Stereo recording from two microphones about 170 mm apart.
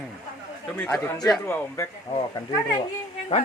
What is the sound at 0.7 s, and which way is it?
Speech, 10° left (ahead or behind).